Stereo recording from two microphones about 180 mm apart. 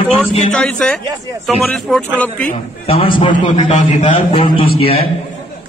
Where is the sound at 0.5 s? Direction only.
5° left (ahead or behind).